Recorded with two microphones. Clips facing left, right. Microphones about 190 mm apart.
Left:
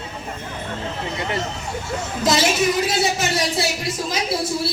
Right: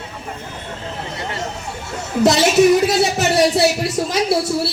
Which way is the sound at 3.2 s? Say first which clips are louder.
Right 7 dB; 65° right (ahead or behind).